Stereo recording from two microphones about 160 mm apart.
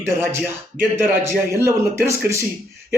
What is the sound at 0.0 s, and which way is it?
Speech, 15° right (ahead or behind).